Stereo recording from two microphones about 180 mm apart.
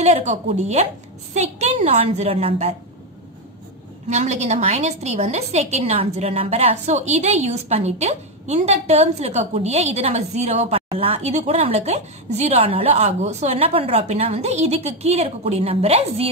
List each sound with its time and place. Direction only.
0.0 s a woman's voice: 40° right (ahead or behind)
4.1 s a woman's voice: 40° right (ahead or behind)